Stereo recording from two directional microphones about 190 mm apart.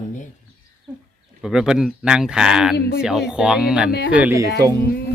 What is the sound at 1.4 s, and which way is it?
Speech, 5° right (ahead or behind).